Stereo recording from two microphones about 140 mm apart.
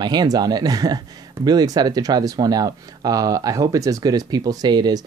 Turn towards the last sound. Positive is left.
turn(degrees=-30)  # may be behind; listen again after turning